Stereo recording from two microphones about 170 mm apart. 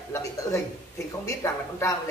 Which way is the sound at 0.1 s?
20° left (ahead or behind).